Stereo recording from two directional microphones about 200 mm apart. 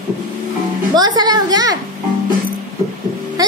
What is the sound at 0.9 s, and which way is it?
Speech, 20° right (ahead or behind).